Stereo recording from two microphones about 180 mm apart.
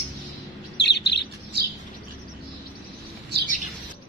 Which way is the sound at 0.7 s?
70° left (ahead or behind).